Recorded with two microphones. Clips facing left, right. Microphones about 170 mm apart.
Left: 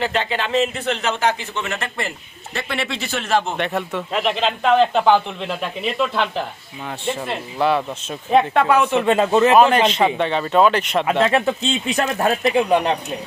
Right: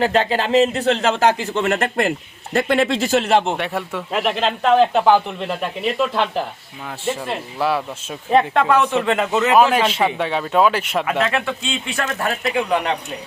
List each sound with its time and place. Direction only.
0.0 s speech: 40° right (ahead or behind)
3.6 s speech: 5° right (ahead or behind)
9.0 s speech: 20° left (ahead or behind)
9.6 s speech: 5° right (ahead or behind)
11.0 s speech: 25° left (ahead or behind)